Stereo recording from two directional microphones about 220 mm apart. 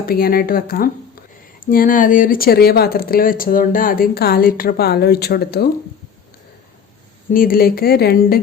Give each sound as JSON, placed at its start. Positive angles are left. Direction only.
{"t": 0.0, "sound": "speech", "side_deg": 40}
{"t": 7.3, "sound": "speech", "side_deg": 40}